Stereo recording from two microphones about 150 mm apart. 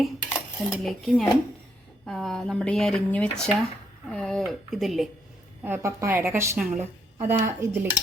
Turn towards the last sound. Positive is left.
turn(degrees=-15)  # may be behind; listen again after turning